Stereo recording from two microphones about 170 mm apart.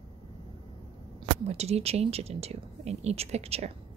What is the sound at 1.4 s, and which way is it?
Speech, 40° right (ahead or behind).